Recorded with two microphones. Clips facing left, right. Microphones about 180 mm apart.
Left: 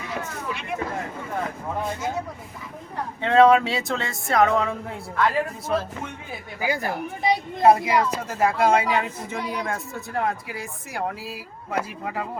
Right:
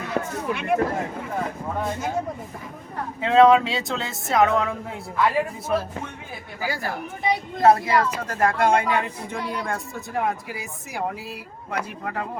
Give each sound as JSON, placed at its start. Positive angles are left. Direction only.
{"t": 0.0, "sound": "speech", "side_deg": -55}
{"t": 3.2, "sound": "speech", "side_deg": 0}
{"t": 6.6, "sound": "speech", "side_deg": 20}